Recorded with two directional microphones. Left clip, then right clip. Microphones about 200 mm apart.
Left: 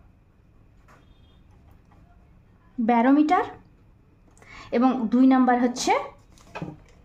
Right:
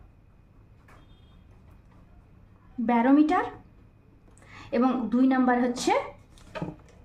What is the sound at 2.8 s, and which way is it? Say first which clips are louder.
Speech: left 2 dB; 35° left (ahead or behind).